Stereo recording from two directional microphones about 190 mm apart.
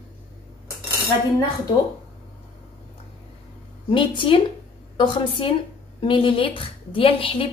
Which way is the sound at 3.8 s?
25° left (ahead or behind).